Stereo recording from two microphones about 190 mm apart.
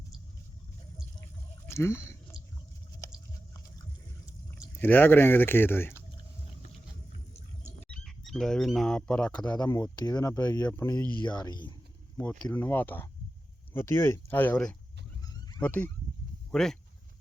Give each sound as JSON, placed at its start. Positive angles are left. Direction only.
{"t": 1.6, "sound": "a sound", "side_deg": 15}
{"t": 4.8, "sound": "speech", "side_deg": 10}
{"t": 7.9, "sound": "speech", "side_deg": 5}
{"t": 9.6, "sound": "speech", "side_deg": 20}
{"t": 12.1, "sound": "speech", "side_deg": 10}